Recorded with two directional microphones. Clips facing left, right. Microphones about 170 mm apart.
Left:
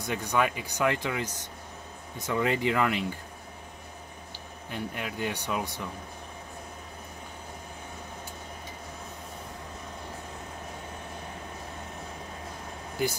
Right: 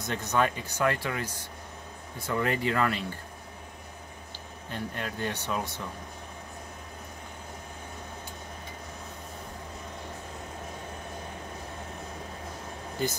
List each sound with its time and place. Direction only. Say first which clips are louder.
0.0 s speech: even; 10° left (ahead or behind)
4.6 s speech: even; 15° left (ahead or behind)
13.0 s speech: left 1 dB; 10° left (ahead or behind)